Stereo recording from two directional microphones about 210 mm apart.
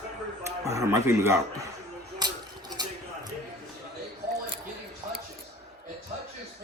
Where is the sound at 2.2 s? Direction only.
20° right (ahead or behind).